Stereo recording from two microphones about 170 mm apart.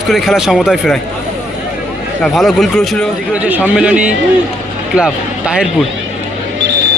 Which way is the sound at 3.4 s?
10° right (ahead or behind).